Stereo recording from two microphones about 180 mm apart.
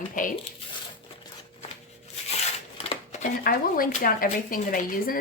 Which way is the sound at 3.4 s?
50° left (ahead or behind).